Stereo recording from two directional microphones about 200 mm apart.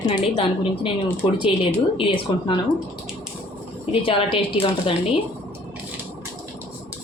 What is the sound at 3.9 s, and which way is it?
A woman's voice, 25° left (ahead or behind).